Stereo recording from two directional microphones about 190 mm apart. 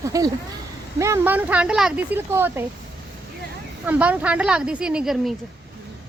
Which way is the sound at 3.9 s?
5° right (ahead or behind).